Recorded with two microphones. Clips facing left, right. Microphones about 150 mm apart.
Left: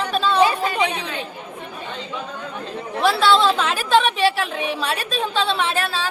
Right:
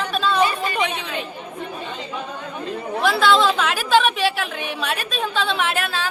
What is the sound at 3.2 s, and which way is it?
A man's voice, 30° left (ahead or behind).